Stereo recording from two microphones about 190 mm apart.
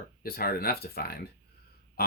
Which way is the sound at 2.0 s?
50° left (ahead or behind).